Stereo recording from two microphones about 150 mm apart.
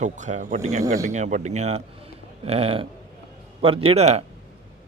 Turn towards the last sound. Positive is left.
turn(degrees=-45)  # may be behind; listen again after turning